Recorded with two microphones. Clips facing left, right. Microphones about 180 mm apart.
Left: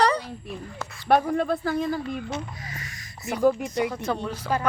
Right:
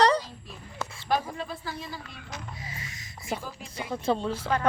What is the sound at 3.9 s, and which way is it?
Speech, 25° right (ahead or behind).